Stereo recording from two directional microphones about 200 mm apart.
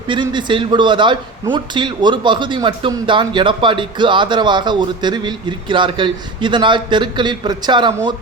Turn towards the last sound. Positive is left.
turn(degrees=-20)  # may be behind; listen again after turning